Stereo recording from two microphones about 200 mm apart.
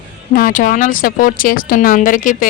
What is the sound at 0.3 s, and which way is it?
Speech, 45° left (ahead or behind).